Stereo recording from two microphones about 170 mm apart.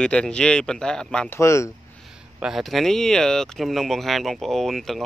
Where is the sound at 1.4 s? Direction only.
15° left (ahead or behind).